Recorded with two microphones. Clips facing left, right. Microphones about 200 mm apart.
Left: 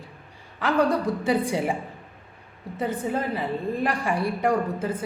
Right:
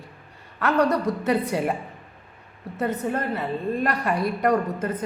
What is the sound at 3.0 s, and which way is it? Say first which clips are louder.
Speech: even; 10° left (ahead or behind).